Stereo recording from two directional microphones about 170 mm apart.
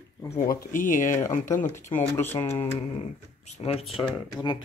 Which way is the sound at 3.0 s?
40° left (ahead or behind).